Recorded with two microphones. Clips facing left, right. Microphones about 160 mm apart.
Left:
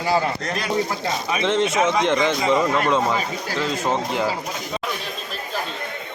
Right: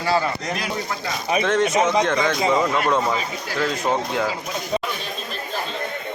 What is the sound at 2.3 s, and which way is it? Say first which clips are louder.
Speech: even; 5° right (ahead or behind).